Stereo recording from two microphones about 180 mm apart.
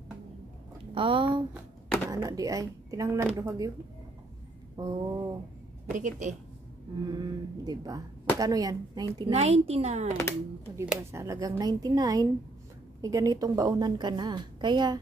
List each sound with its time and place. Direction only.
0.9 s a woman's voice: 30° right (ahead or behind)
4.7 s a woman's voice: 25° right (ahead or behind)
5.9 s a woman's voice: 45° right (ahead or behind)
7.1 s a woman's voice: 20° right (ahead or behind)
9.3 s speech: 35° right (ahead or behind)
10.9 s a woman's voice: 15° right (ahead or behind)